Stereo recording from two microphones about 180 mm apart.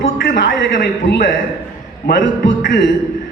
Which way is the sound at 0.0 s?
75° left (ahead or behind).